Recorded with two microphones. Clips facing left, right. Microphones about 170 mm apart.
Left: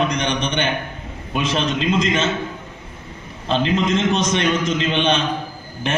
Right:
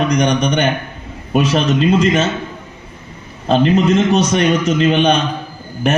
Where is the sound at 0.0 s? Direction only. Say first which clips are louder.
Right 6 dB; 40° right (ahead or behind).